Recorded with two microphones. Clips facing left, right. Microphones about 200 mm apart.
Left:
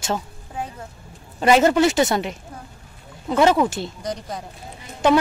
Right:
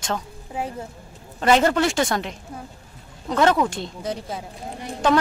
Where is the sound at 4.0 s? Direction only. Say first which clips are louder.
Even; 5° right (ahead or behind).